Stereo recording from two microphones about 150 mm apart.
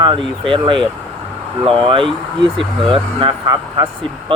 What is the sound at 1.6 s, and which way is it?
Speech, 5° left (ahead or behind).